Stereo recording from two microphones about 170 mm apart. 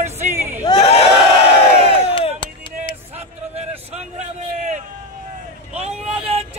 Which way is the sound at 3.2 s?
40° right (ahead or behind).